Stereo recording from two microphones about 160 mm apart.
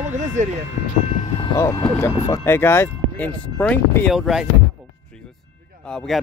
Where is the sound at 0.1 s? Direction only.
50° right (ahead or behind).